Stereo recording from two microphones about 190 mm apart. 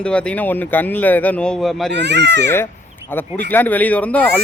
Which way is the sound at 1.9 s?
65° right (ahead or behind).